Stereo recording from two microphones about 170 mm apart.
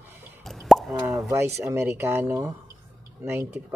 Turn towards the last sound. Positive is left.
turn(degrees=-15)  # may be behind; listen again after turning